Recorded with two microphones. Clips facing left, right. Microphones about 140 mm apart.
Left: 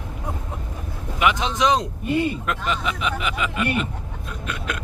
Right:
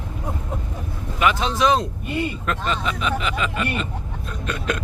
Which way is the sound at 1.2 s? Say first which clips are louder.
Right 1 dB; 20° left (ahead or behind).